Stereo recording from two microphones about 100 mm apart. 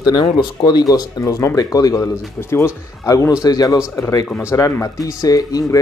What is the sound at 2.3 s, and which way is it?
Speech, 25° left (ahead or behind).